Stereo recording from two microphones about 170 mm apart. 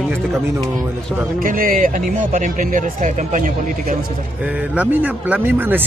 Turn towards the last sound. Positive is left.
turn(degrees=-10)  # may be behind; listen again after turning